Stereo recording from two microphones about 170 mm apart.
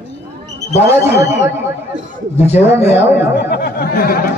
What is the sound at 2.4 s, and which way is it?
Speech, 40° left (ahead or behind).